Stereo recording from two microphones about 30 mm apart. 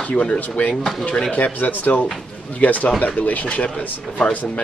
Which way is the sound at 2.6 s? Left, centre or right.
Left.